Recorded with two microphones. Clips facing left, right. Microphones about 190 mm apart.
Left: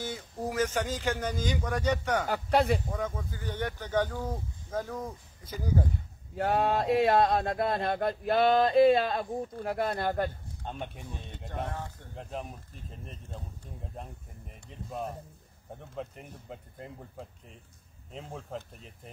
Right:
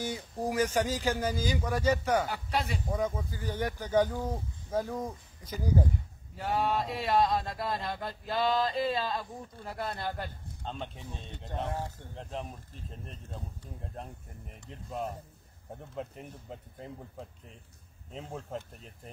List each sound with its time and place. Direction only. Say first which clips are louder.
0.0 s speech: right 1 dB; 10° right (ahead or behind)
2.2 s speech: left 7 dB; 55° left (ahead or behind)
2.9 s speech: right 2 dB; 10° right (ahead or behind)
6.3 s speech: left 3 dB; 60° left (ahead or behind)
10.6 s speech: left 1 dB; 15° left (ahead or behind)
14.5 s speech: even; centre (ahead or behind)